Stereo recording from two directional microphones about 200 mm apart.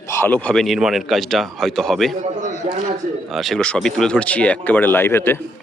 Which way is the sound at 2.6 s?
35° right (ahead or behind).